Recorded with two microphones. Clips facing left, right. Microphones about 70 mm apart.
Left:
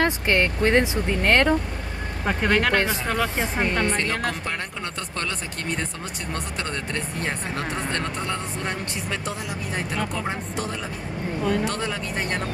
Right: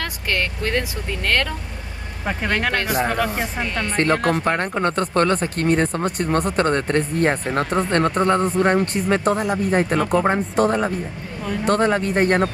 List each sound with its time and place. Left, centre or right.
0.0 s speech: left
2.2 s speech: centre
2.7 s a woman's voice: left
3.9 s speech: right